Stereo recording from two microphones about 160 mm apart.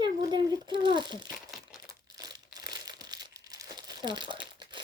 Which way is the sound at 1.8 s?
25° right (ahead or behind).